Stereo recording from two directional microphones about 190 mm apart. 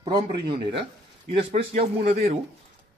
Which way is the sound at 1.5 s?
35° right (ahead or behind).